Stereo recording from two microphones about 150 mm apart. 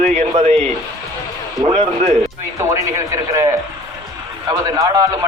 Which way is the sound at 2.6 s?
20° right (ahead or behind).